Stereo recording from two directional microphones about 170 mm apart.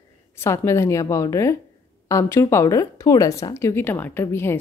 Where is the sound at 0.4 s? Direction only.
15° left (ahead or behind).